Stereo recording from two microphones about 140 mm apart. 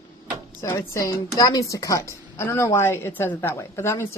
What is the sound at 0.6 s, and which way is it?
A woman's voice, 20° left (ahead or behind).